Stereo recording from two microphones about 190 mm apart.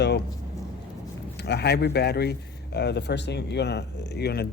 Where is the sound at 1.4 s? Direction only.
60° left (ahead or behind).